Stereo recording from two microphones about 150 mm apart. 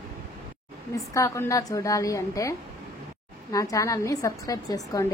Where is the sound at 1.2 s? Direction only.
20° left (ahead or behind).